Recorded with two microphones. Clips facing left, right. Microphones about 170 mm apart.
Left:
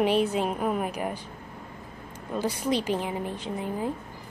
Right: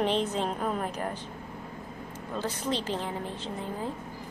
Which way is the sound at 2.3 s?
10° left (ahead or behind).